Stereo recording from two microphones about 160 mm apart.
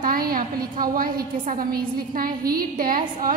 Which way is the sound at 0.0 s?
65° right (ahead or behind).